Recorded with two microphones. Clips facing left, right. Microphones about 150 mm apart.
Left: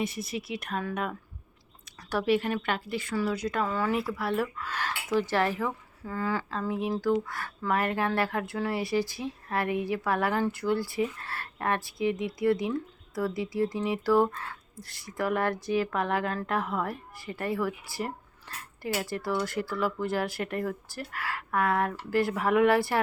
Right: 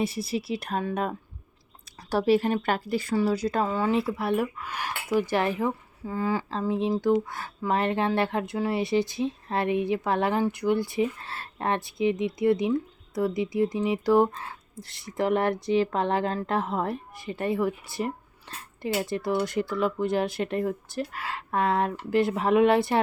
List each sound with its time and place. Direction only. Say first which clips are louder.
0.0 s speech: right 4 dB; 30° right (ahead or behind)
3.7 s speech: right 3 dB; 20° right (ahead or behind)